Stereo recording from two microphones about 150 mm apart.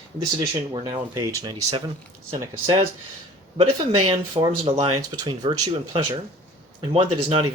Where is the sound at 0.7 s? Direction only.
30° right (ahead or behind).